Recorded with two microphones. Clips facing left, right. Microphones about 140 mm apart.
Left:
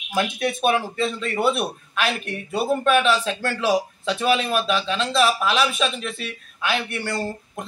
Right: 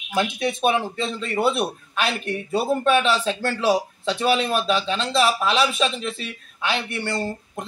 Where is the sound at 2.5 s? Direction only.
Centre (ahead or behind).